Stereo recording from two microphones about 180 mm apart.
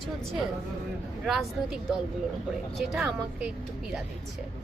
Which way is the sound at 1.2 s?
Centre (ahead or behind).